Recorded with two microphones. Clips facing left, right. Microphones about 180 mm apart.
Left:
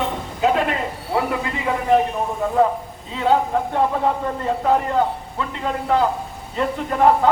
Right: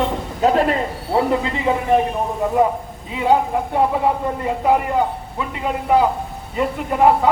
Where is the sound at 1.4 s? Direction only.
25° right (ahead or behind).